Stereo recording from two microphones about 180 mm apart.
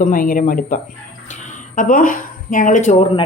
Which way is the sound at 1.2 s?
40° left (ahead or behind).